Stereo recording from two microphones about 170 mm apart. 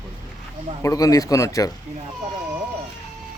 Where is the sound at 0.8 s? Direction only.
20° left (ahead or behind).